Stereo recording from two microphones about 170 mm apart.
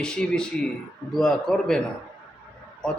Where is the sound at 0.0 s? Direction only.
5° left (ahead or behind).